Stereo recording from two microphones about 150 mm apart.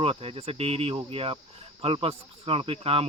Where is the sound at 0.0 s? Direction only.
40° right (ahead or behind).